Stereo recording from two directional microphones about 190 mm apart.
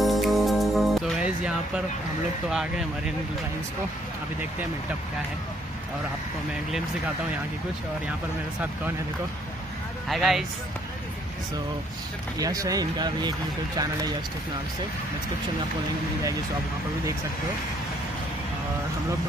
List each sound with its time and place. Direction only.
0.0 s music: centre (ahead or behind)
2.5 s speech: 5° right (ahead or behind)
10.0 s speech: centre (ahead or behind)
12.4 s speech: 20° right (ahead or behind)